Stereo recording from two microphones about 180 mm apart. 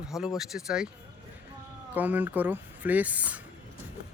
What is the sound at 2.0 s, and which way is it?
Speech, 10° right (ahead or behind).